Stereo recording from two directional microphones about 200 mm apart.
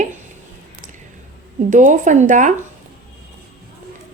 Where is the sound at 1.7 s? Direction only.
40° right (ahead or behind).